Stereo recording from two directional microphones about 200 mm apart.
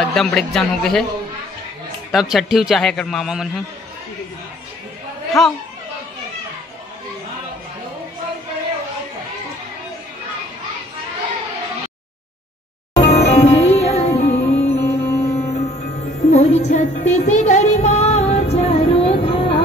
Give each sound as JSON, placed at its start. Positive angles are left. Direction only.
{"t": 0.0, "sound": "a man's voice", "side_deg": 5}
{"t": 2.1, "sound": "a man's voice", "side_deg": 0}
{"t": 5.4, "sound": "a man's voice", "side_deg": 0}
{"t": 12.9, "sound": "music", "side_deg": 35}
{"t": 14.8, "sound": "music", "side_deg": 15}
{"t": 16.3, "sound": "music", "side_deg": 35}